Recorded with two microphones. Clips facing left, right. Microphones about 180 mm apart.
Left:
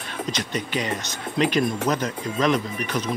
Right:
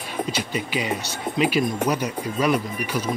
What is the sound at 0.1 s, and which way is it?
Speech, 10° right (ahead or behind).